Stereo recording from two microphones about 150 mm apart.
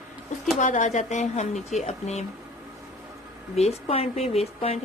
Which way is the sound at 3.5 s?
45° left (ahead or behind).